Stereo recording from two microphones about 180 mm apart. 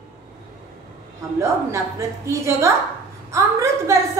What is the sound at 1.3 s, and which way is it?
A woman's voice, 15° right (ahead or behind).